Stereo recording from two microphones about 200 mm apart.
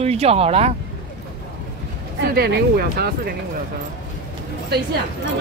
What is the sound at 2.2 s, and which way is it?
Speech, 50° right (ahead or behind).